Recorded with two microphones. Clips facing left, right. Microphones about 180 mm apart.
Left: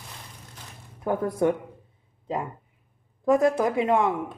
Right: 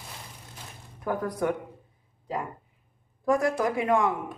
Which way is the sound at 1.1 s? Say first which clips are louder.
Left 3 dB; 25° left (ahead or behind).